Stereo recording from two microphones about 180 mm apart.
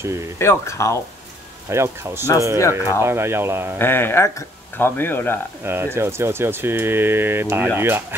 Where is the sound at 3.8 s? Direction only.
10° left (ahead or behind).